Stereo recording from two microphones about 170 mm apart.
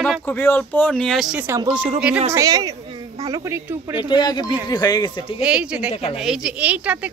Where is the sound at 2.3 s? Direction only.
20° right (ahead or behind).